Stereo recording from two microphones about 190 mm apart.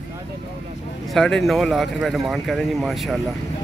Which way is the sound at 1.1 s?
Centre (ahead or behind).